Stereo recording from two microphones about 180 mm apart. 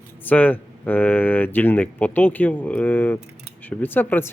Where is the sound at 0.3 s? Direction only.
10° left (ahead or behind).